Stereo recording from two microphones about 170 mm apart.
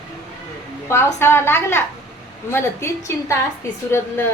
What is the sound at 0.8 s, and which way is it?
A woman's voice, 15° left (ahead or behind).